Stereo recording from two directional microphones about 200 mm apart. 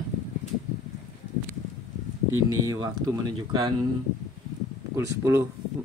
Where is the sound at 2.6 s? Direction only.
15° right (ahead or behind).